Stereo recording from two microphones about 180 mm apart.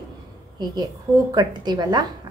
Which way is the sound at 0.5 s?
20° right (ahead or behind).